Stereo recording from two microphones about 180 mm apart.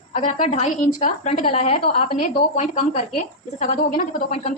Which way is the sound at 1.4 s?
35° left (ahead or behind).